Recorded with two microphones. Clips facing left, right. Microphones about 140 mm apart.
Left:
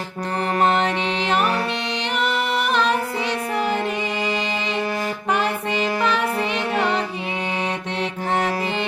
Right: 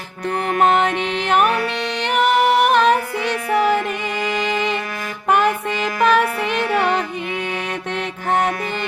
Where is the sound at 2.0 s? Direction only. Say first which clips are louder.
Right 8 dB; 55° right (ahead or behind).